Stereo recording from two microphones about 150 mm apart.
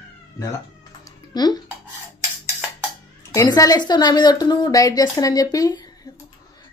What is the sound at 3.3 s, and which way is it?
Speech, 20° left (ahead or behind).